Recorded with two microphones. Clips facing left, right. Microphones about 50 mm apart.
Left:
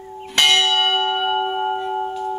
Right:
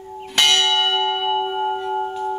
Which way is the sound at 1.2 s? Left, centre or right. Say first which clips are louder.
Even; centre.